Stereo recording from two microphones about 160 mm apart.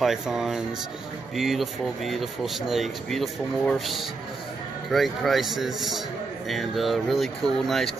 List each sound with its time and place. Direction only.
0.0 s speech: 5° right (ahead or behind)